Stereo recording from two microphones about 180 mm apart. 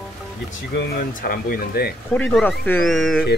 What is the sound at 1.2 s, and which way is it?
Speech, 55° left (ahead or behind).